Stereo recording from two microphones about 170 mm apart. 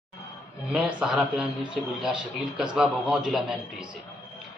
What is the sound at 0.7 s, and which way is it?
A man's voice, 5° right (ahead or behind).